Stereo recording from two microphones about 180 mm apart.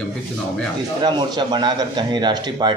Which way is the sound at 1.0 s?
25° right (ahead or behind).